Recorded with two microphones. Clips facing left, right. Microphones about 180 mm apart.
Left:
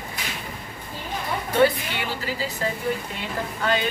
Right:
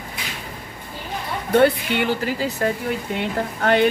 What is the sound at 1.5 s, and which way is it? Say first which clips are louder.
A woman's voice: right 4 dB; 60° right (ahead or behind).